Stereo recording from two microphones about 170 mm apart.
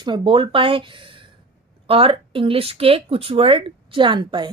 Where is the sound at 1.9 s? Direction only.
30° right (ahead or behind).